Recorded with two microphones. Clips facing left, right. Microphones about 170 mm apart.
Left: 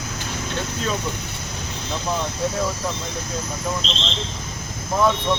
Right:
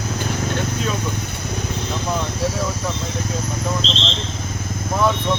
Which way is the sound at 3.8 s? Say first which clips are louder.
Right 4 dB; 30° right (ahead or behind).